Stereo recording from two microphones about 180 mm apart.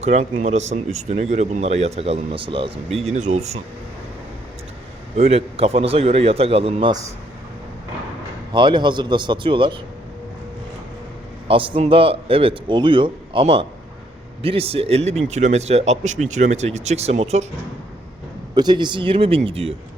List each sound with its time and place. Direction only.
0.0 s speech: 35° right (ahead or behind)
5.1 s speech: 35° right (ahead or behind)
8.5 s a man's voice: 25° right (ahead or behind)
11.4 s a man's voice: 30° right (ahead or behind)
18.5 s speech: 25° right (ahead or behind)